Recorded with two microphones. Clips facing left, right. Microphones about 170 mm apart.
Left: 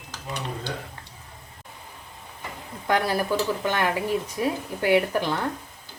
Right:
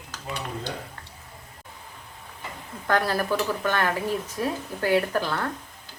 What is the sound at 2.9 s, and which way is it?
Speech, 15° left (ahead or behind).